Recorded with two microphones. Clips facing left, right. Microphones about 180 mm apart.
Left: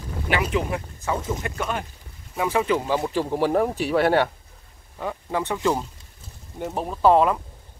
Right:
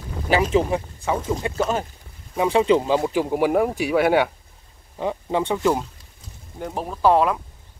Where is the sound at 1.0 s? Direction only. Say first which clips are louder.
Right 3 dB; 20° right (ahead or behind); by 4.3 s 5° right (ahead or behind).